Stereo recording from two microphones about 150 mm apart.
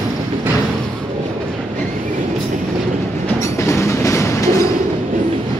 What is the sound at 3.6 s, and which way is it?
Train, 20° left (ahead or behind).